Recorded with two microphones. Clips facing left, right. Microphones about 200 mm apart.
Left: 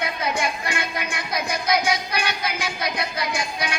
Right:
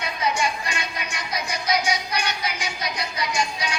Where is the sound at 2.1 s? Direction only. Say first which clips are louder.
Left 1 dB; 55° left (ahead or behind).